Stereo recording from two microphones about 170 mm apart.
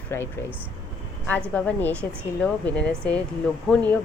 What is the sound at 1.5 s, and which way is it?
Speech, 10° left (ahead or behind).